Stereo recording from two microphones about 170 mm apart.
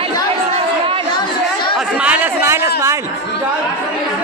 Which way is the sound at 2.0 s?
10° right (ahead or behind).